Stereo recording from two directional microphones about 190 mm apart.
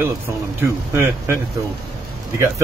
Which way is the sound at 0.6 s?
15° right (ahead or behind).